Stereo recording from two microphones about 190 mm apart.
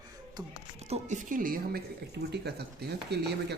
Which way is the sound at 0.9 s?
40° right (ahead or behind).